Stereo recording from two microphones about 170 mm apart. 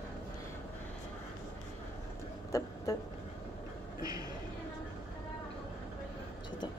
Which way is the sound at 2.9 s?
20° left (ahead or behind).